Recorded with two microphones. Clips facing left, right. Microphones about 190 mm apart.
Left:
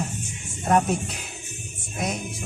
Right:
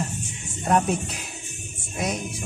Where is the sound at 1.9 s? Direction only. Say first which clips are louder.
Right 1 dB; centre (ahead or behind).